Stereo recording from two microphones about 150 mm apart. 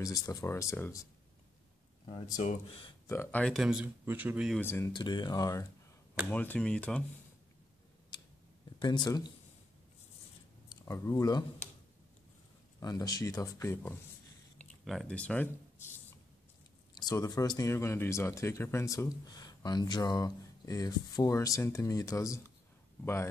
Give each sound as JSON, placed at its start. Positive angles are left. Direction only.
{"t": 0.0, "sound": "speech", "side_deg": 25}
{"t": 2.0, "sound": "speech", "side_deg": 35}
{"t": 3.1, "sound": "speech", "side_deg": 15}
{"t": 3.5, "sound": "speech", "side_deg": -5}
{"t": 4.6, "sound": "speech", "side_deg": 15}
{"t": 4.9, "sound": "speech", "side_deg": 30}
{"t": 6.3, "sound": "speech", "side_deg": 10}
{"t": 8.1, "sound": "tick-tock", "side_deg": 30}
{"t": 8.7, "sound": "speech", "side_deg": 30}
{"t": 10.7, "sound": "speech", "side_deg": 20}
{"t": 12.8, "sound": "speech", "side_deg": 25}
{"t": 14.9, "sound": "speech", "side_deg": 5}
{"t": 16.9, "sound": "speech", "side_deg": 25}